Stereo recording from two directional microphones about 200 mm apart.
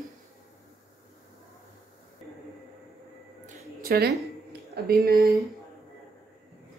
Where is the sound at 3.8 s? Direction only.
50° right (ahead or behind).